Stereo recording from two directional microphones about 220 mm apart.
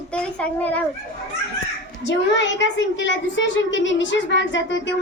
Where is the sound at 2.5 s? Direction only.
55° left (ahead or behind).